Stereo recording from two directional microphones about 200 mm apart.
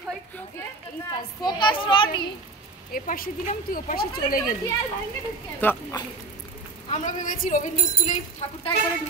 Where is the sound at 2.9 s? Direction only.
45° left (ahead or behind).